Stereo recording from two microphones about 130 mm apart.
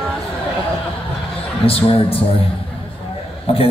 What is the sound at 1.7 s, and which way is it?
Speech, 45° left (ahead or behind).